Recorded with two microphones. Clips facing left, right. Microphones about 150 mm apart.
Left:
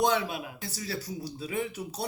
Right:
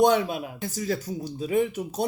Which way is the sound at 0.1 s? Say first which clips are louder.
Right 6 dB; 40° right (ahead or behind).